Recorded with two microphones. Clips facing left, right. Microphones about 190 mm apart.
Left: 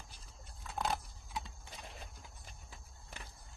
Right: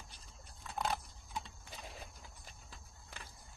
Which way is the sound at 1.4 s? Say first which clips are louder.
Even; centre (ahead or behind).